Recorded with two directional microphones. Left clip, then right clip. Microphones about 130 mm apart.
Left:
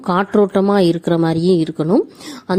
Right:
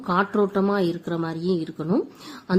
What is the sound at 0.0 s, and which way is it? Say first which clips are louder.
A woman's voice: left 7 dB; 55° left (ahead or behind).